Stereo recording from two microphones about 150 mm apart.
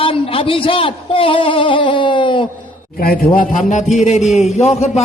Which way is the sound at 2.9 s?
75° left (ahead or behind).